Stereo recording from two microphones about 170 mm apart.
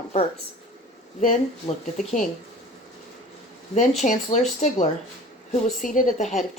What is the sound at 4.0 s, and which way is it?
Speech, 45° left (ahead or behind).